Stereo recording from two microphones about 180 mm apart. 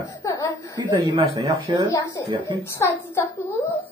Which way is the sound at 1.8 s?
20° left (ahead or behind).